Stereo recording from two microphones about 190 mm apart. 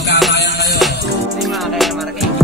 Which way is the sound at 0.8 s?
Centre (ahead or behind).